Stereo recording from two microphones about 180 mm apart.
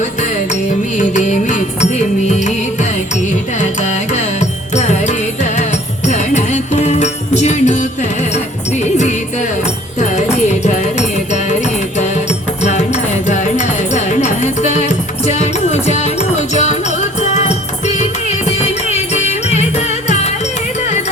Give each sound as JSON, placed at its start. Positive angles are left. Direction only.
{"t": 0.9, "sound": "music", "side_deg": 40}
{"t": 3.6, "sound": "carnatic music", "side_deg": 40}
{"t": 11.3, "sound": "music", "side_deg": 40}